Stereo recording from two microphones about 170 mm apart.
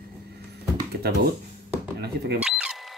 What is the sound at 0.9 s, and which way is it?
Speech, 65° right (ahead or behind).